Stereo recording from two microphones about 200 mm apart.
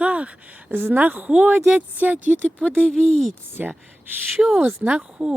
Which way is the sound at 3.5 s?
10° right (ahead or behind).